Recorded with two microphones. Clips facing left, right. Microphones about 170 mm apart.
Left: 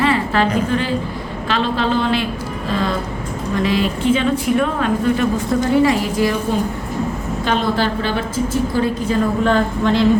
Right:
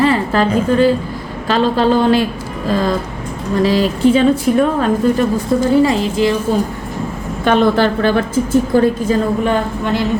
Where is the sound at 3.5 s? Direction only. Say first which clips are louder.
Right 4 dB; 35° right (ahead or behind).